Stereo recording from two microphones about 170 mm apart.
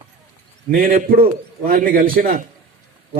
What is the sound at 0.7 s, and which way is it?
A man's voice, 55° right (ahead or behind).